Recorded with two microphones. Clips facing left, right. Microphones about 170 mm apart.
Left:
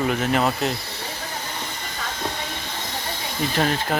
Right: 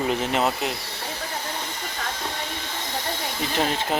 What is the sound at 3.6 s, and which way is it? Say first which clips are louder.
Speech: left 1 dB; 20° right (ahead or behind).